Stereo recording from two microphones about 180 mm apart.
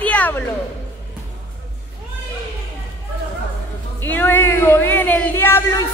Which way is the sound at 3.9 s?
10° left (ahead or behind).